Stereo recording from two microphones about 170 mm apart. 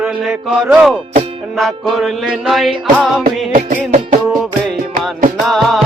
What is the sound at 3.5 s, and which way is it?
Music, 45° right (ahead or behind).